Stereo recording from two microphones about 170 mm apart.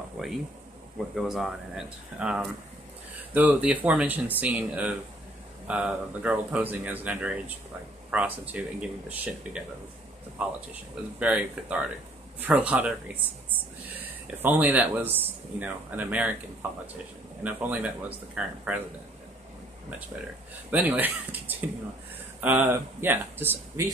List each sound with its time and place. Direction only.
0.2 s speech: centre (ahead or behind)
10.7 s speech: 5° right (ahead or behind)
14.2 s speech: 10° right (ahead or behind)
17.4 s speech: 10° right (ahead or behind)
20.7 s speech: 10° right (ahead or behind)